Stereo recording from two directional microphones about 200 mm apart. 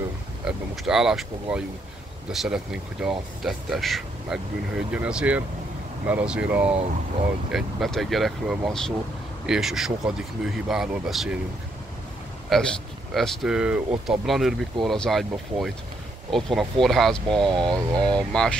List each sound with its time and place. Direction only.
0.5 s speech: 5° right (ahead or behind)
12.5 s speech: centre (ahead or behind)
17.5 s speech: 20° right (ahead or behind)
18.3 s speech: 5° left (ahead or behind)